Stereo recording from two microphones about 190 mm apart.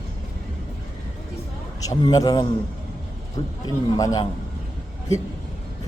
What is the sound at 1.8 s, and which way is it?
Speech, 20° left (ahead or behind).